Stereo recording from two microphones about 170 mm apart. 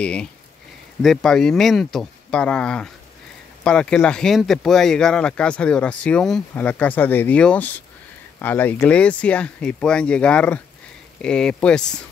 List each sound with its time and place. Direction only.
0.0 s speech: 5° left (ahead or behind)